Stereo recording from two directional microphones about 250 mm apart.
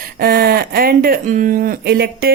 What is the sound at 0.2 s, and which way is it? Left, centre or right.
Speech, right.